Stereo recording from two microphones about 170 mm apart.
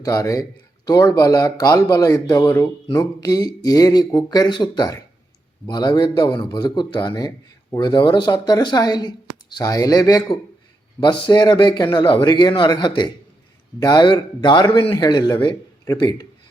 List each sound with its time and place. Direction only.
0.0 s a man's voice: 20° left (ahead or behind)